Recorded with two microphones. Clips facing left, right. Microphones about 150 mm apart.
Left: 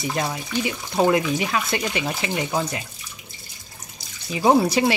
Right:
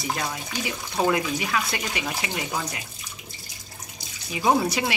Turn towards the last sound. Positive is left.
turn(degrees=30)  # may be behind; listen again after turning